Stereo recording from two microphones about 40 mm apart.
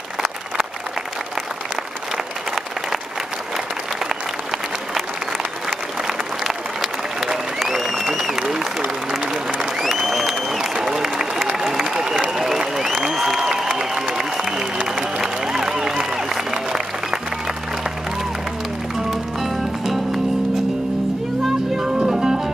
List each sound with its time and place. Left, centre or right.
5.7 s applause: centre
14.1 s a sound: centre
19.4 s music: centre
21.7 s music: centre